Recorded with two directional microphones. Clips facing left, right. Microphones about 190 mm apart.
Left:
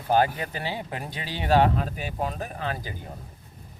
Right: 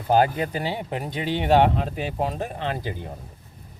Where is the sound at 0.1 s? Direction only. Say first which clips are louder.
Right 3 dB; 25° right (ahead or behind).